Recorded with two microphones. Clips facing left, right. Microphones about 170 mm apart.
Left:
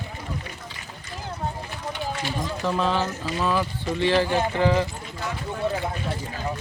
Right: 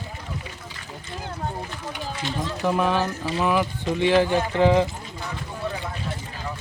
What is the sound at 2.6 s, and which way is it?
Speech, 15° right (ahead or behind).